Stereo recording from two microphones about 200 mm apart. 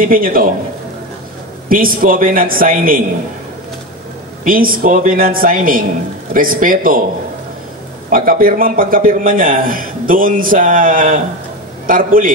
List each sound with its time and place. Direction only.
0.0 s a man's voice: 45° right (ahead or behind)
1.7 s a man's voice: 45° right (ahead or behind)
4.5 s a man's voice: 45° right (ahead or behind)
8.1 s a man's voice: 45° right (ahead or behind)